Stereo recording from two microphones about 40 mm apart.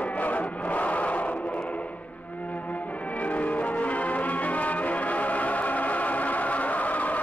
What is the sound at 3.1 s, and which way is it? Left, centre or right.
Music, left.